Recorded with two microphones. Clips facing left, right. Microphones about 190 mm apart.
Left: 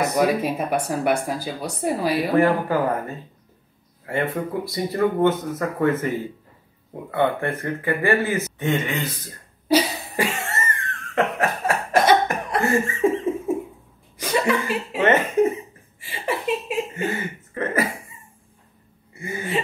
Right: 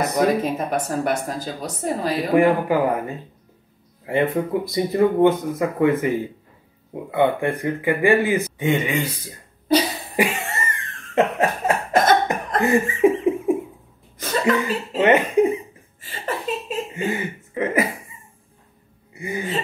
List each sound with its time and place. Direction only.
0.0 s speech: 5° left (ahead or behind)
2.3 s speech: 15° right (ahead or behind)
4.0 s speech: 15° right (ahead or behind)
10.1 s cough: 15° right (ahead or behind)
12.6 s a sound: 15° right (ahead or behind)
14.1 s chuckle: 10° left (ahead or behind)
15.0 s speech: 15° right (ahead or behind)
16.0 s a sound: 10° left (ahead or behind)
16.9 s speech: 15° right (ahead or behind)
19.1 s gasp: 15° right (ahead or behind)